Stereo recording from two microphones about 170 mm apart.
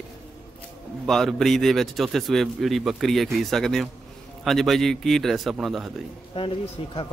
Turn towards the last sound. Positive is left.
turn(degrees=30)  # may be behind; listen again after turning